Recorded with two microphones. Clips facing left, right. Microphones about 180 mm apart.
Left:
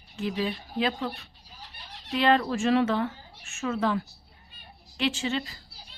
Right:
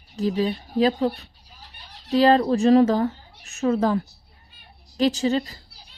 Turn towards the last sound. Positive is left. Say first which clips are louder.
# right 8 dB
turn(degrees=-40)  # may be behind; listen again after turning